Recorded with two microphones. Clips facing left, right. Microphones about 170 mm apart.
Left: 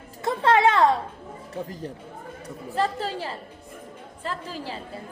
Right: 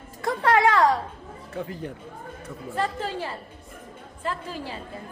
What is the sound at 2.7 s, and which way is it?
A woman's voice, 35° left (ahead or behind).